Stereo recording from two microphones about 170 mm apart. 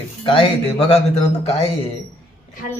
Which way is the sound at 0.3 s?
35° left (ahead or behind).